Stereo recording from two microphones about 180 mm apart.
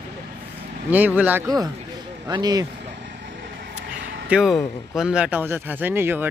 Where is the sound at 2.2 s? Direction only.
20° right (ahead or behind).